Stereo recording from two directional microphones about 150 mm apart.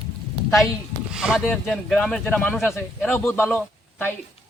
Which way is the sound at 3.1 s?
15° left (ahead or behind).